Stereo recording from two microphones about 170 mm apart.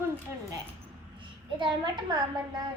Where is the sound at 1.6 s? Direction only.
25° right (ahead or behind).